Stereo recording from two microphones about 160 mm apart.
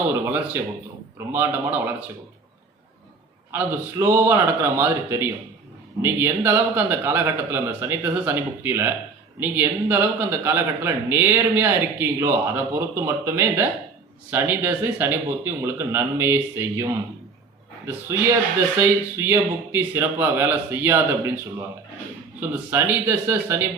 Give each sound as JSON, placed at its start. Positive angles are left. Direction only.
{"t": 0.1, "sound": "a man's voice", "side_deg": -15}
{"t": 3.5, "sound": "a man's voice", "side_deg": -15}
{"t": 22.4, "sound": "a man's voice", "side_deg": -15}